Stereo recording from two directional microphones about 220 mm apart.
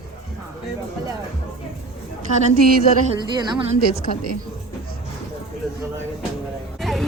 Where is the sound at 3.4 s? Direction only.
20° right (ahead or behind).